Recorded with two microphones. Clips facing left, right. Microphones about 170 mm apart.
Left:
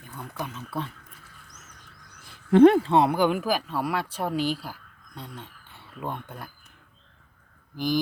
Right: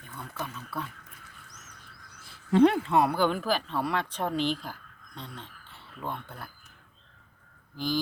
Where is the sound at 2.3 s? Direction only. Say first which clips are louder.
Left 6 dB; 50° left (ahead or behind).